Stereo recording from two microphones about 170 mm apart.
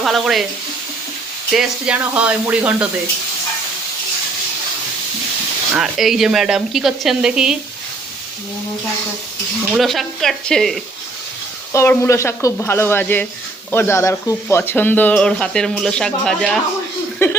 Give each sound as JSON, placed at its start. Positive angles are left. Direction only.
{"t": 0.0, "sound": "speech", "side_deg": 0}
{"t": 1.5, "sound": "speech", "side_deg": -5}
{"t": 5.7, "sound": "speech", "side_deg": 0}
{"t": 9.6, "sound": "speech", "side_deg": 0}
{"t": 11.7, "sound": "speech", "side_deg": 15}
{"t": 17.2, "sound": "a sound", "side_deg": 15}